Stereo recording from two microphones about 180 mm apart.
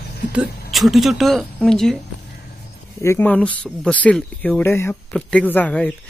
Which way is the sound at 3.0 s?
10° left (ahead or behind).